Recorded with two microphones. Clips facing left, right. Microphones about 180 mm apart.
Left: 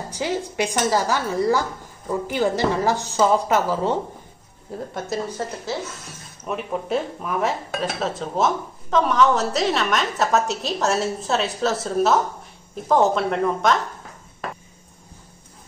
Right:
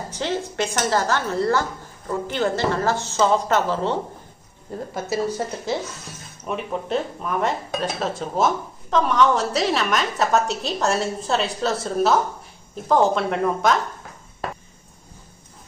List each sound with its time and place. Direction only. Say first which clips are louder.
0.2 s speech: left 1 dB; 10° left (ahead or behind)
4.6 s speech: right 1 dB; centre (ahead or behind)
6.4 s speech: even; centre (ahead or behind)